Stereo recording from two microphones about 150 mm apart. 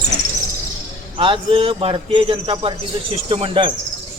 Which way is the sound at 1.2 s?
35° right (ahead or behind).